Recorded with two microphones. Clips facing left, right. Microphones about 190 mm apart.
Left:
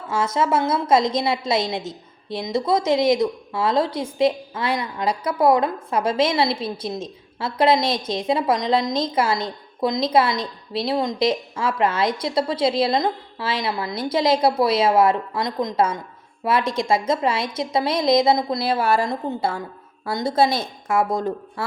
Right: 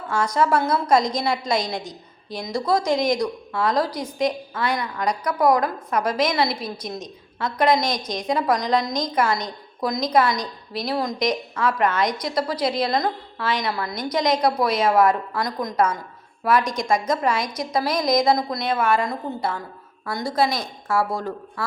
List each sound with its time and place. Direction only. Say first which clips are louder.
0.2 s a woman's voice: even; 25° left (ahead or behind)